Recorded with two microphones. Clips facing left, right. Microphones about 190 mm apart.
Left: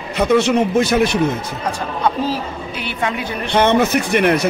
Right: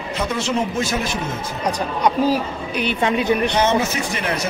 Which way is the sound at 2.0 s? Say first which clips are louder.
Right 2 dB; 15° right (ahead or behind).